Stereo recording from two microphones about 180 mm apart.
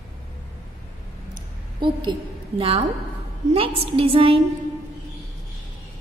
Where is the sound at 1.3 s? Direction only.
25° right (ahead or behind).